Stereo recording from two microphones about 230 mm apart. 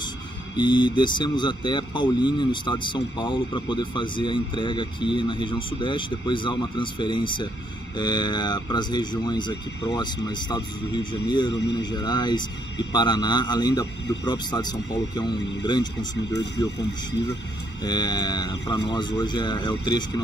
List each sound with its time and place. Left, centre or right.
0.6 s speech: centre
17.8 s speech: centre